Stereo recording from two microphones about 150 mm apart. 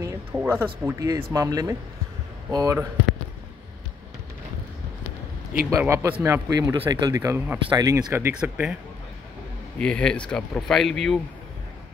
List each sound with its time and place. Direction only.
0.0 s speech: 15° right (ahead or behind)
0.8 s speech: 25° right (ahead or behind)
5.7 s speech: 15° right (ahead or behind)
9.8 s speech: 5° left (ahead or behind)